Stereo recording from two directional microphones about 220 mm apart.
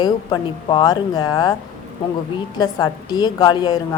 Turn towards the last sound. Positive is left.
turn(degrees=20)  # may be behind; listen again after turning